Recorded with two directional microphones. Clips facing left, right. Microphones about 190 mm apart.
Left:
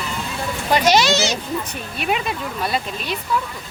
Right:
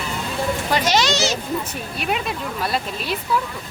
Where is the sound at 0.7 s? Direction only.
10° left (ahead or behind).